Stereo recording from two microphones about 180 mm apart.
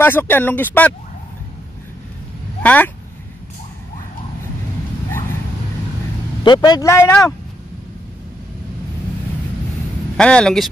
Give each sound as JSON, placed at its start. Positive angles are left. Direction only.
{"t": 0.0, "sound": "speech", "side_deg": 10}
{"t": 2.6, "sound": "speech", "side_deg": 10}
{"t": 6.4, "sound": "speech", "side_deg": 25}
{"t": 10.1, "sound": "speech", "side_deg": 5}